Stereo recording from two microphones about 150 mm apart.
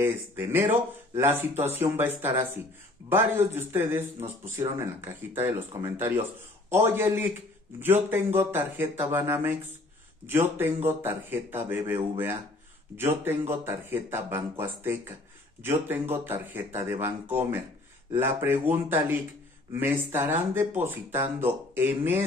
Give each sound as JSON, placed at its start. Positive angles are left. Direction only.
{"t": 0.0, "sound": "a man's voice", "side_deg": -15}